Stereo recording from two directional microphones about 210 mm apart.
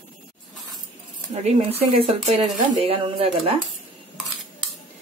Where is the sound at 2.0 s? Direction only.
25° right (ahead or behind).